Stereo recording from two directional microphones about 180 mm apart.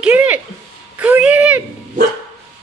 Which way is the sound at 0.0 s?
10° right (ahead or behind).